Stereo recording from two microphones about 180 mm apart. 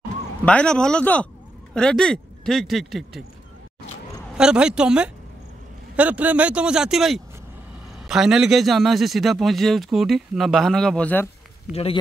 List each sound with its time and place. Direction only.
0.5 s speech: 5° left (ahead or behind)
4.4 s speech: 5° right (ahead or behind)
11.7 s speech: 35° left (ahead or behind)